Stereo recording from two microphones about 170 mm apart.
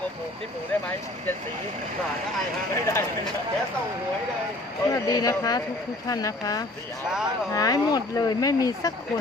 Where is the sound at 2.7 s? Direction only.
15° left (ahead or behind).